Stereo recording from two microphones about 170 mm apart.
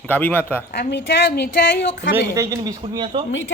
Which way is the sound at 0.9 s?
75° left (ahead or behind).